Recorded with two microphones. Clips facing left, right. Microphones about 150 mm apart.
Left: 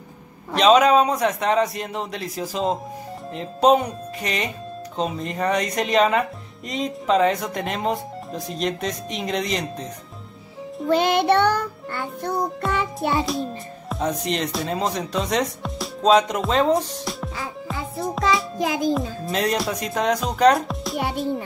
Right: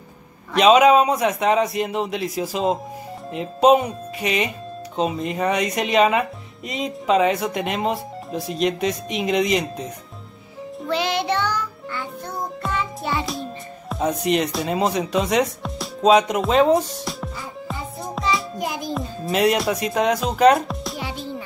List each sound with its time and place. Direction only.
0.6 s speech: 5° right (ahead or behind)
10.9 s music: 50° left (ahead or behind)
13.3 s speech: centre (ahead or behind)
18.9 s speech: 5° right (ahead or behind)